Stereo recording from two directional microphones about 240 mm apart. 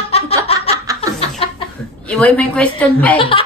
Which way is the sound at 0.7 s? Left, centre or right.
Centre.